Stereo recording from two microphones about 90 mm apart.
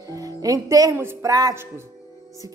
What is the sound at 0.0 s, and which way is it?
Music, 40° right (ahead or behind).